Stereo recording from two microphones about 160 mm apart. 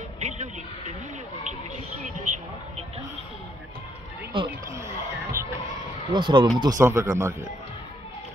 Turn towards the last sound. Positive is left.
turn(degrees=-15)  # may be behind; listen again after turning